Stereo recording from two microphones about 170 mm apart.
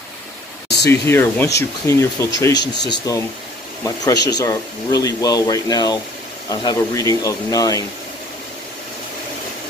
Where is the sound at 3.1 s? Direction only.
20° left (ahead or behind).